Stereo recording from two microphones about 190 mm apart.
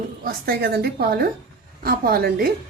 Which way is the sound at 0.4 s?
55° right (ahead or behind).